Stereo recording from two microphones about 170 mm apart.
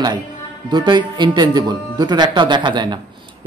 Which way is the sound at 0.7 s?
25° right (ahead or behind).